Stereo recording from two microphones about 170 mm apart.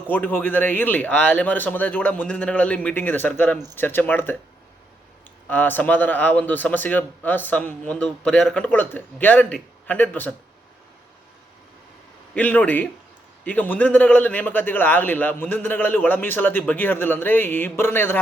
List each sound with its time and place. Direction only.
0.1 s a man's voice: 10° left (ahead or behind)
5.5 s a man's voice: 10° left (ahead or behind)
12.3 s a man's voice: 10° left (ahead or behind)